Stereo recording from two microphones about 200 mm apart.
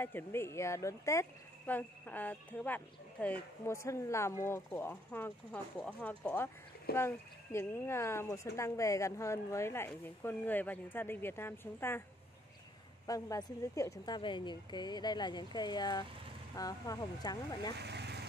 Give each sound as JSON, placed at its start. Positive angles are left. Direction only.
{"t": 0.0, "sound": "speech", "side_deg": 10}
{"t": 13.0, "sound": "a woman's voice", "side_deg": 15}
{"t": 17.7, "sound": "vehicle", "side_deg": -55}